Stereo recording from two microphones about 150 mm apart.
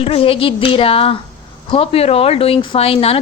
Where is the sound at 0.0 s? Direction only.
40° left (ahead or behind).